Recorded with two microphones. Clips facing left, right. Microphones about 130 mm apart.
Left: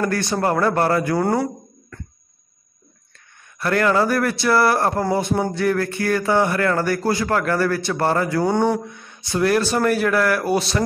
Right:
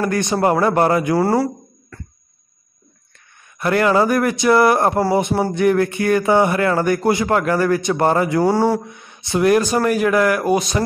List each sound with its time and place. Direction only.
0.0 s speech: 20° right (ahead or behind)
1.1 s speech: 5° right (ahead or behind)
3.5 s speech: 15° right (ahead or behind)
8.8 s speech: 15° right (ahead or behind)